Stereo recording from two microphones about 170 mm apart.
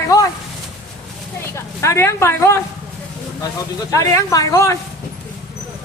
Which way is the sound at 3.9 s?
20° left (ahead or behind).